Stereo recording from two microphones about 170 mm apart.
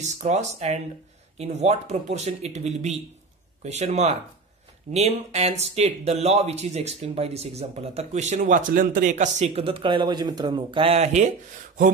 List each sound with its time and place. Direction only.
0.0 s speech: 45° right (ahead or behind)